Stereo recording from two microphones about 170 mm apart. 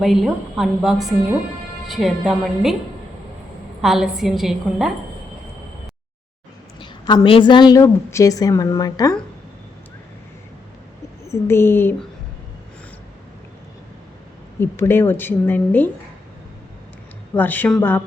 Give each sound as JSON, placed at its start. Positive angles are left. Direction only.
{"t": 0.0, "sound": "a woman's voice", "side_deg": 0}
{"t": 3.8, "sound": "a woman's voice", "side_deg": 0}
{"t": 6.7, "sound": "a woman's voice", "side_deg": 30}
{"t": 11.3, "sound": "speech", "side_deg": 15}
{"t": 14.6, "sound": "speech", "side_deg": 15}
{"t": 17.3, "sound": "speech", "side_deg": 10}